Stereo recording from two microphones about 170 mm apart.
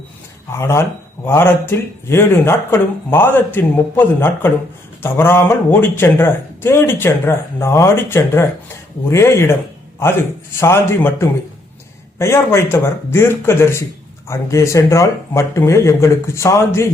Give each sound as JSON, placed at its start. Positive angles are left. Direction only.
{"t": 0.5, "sound": "speech", "side_deg": 15}
{"t": 10.6, "sound": "speech", "side_deg": 15}